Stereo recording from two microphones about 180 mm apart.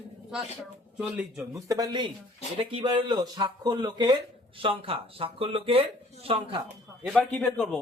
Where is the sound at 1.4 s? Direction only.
20° right (ahead or behind).